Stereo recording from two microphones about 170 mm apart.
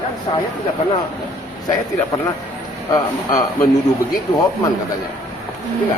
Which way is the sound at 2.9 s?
20° left (ahead or behind).